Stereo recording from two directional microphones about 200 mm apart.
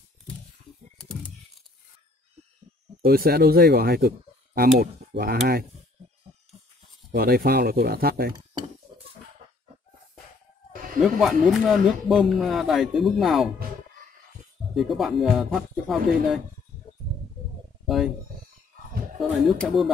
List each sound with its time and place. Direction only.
3.0 s speech: 50° right (ahead or behind)
7.1 s speech: 50° right (ahead or behind)
11.0 s speech: centre (ahead or behind)
14.8 s speech: centre (ahead or behind)
17.8 s a sound: centre (ahead or behind)
19.1 s speech: centre (ahead or behind)